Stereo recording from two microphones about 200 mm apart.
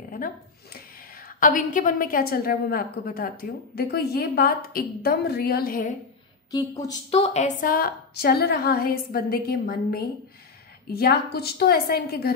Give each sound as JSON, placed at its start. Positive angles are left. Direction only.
{"t": 1.1, "sound": "a woman's voice", "side_deg": 45}
{"t": 6.5, "sound": "speech", "side_deg": 15}
{"t": 7.1, "sound": "a woman's voice", "side_deg": 30}